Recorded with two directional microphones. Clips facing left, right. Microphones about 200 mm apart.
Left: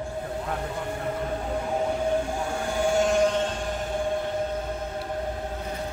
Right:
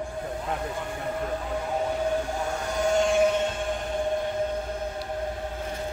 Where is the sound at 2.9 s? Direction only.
Centre (ahead or behind).